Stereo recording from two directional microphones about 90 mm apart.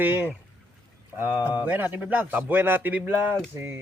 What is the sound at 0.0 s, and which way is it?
Speech, 20° right (ahead or behind).